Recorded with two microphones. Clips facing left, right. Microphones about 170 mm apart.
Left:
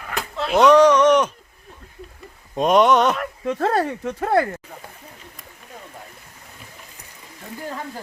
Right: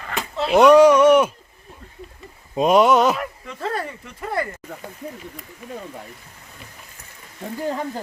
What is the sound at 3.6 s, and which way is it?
Speech, 85° left.